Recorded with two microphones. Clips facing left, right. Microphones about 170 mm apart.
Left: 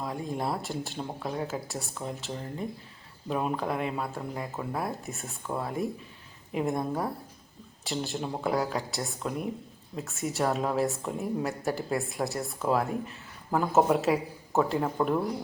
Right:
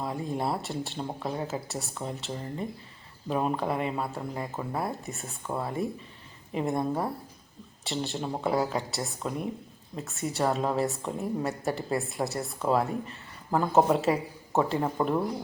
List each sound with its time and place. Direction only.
0.0 s a woman's voice: centre (ahead or behind)